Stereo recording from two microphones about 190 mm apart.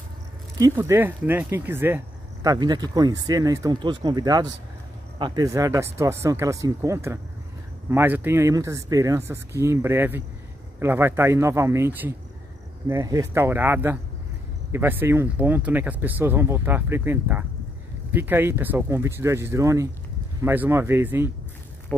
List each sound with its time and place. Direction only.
0.7 s speech: 10° right (ahead or behind)